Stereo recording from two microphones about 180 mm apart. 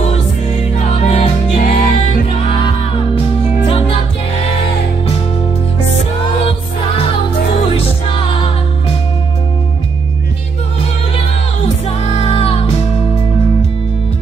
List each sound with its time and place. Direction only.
0.7 s music: 35° left (ahead or behind)
1.6 s music: 55° left (ahead or behind)
3.2 s music: 30° left (ahead or behind)
7.7 s music: 30° left (ahead or behind)
12.0 s music: 35° left (ahead or behind)